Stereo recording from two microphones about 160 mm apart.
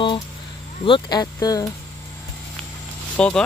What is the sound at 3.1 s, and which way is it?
Speech, 10° left (ahead or behind).